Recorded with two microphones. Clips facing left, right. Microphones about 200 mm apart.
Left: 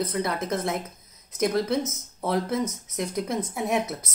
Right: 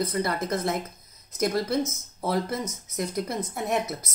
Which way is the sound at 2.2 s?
5° right (ahead or behind).